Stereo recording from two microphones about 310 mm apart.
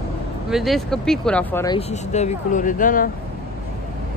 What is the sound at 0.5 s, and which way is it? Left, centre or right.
Speech, centre.